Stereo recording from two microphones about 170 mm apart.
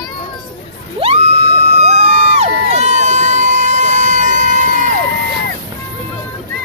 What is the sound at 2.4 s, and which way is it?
Crowd, 40° right (ahead or behind).